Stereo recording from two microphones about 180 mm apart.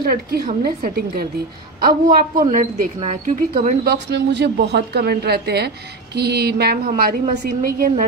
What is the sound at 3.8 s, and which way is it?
A woman's voice, 70° right (ahead or behind).